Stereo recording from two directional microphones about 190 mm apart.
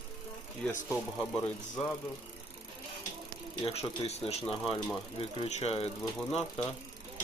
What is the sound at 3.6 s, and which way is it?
Speech, 35° left (ahead or behind).